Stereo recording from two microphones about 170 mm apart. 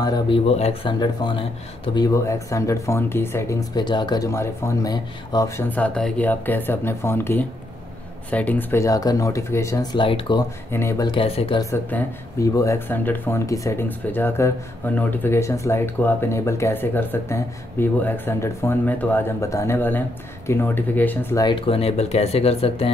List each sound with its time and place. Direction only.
0.0 s speech: 25° left (ahead or behind)
0.5 s speech: 35° left (ahead or behind)
0.9 s speech: 25° left (ahead or behind)
5.7 s speech: 5° left (ahead or behind)
9.9 s speech: 30° left (ahead or behind)
10.7 s speech: 15° left (ahead or behind)
11.1 s speech: 35° left (ahead or behind)
11.7 s speech: 15° left (ahead or behind)
21.5 s speech: 30° left (ahead or behind)